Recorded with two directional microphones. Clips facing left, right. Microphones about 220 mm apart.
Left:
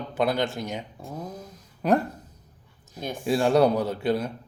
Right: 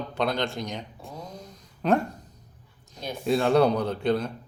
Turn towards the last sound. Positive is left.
turn(degrees=5)  # may be behind; listen again after turning